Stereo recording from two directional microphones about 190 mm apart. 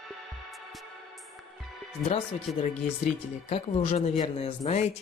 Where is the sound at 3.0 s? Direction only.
35° left (ahead or behind).